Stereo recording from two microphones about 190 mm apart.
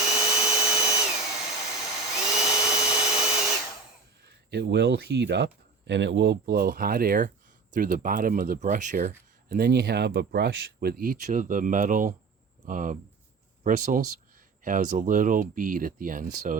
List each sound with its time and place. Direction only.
0.0 s drill: 5° right (ahead or behind)
4.5 s speech: 65° right (ahead or behind); by 16.6 s 45° right (ahead or behind)